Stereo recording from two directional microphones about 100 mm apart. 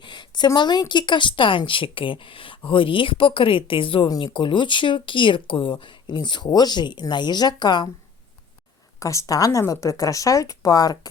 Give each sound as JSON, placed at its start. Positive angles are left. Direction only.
{"t": 0.0, "sound": "a woman's voice", "side_deg": 50}
{"t": 9.0, "sound": "speech", "side_deg": 30}